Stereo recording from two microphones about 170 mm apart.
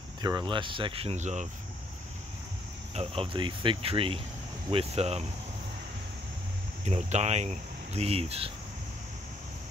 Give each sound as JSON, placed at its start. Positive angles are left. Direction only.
{"t": 0.2, "sound": "speech", "side_deg": -25}
{"t": 2.9, "sound": "speech", "side_deg": -35}
{"t": 6.9, "sound": "speech", "side_deg": -40}